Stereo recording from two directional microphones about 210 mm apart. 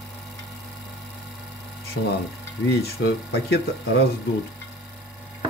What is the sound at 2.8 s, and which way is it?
Speech, 50° left (ahead or behind).